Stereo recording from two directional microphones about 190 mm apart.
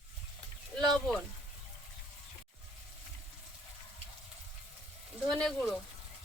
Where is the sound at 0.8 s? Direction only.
Centre (ahead or behind).